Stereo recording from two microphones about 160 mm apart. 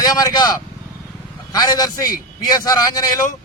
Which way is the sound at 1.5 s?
25° left (ahead or behind).